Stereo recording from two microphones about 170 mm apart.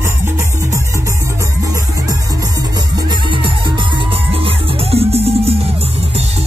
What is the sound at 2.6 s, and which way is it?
Music, 25° right (ahead or behind).